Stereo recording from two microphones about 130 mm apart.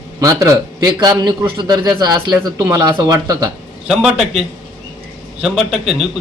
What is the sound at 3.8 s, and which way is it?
Speech, 5° right (ahead or behind).